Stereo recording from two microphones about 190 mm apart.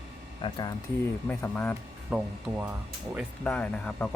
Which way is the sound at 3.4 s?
10° left (ahead or behind).